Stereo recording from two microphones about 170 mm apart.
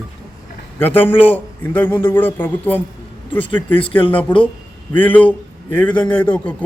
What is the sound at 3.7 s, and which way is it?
Speech, 30° left (ahead or behind).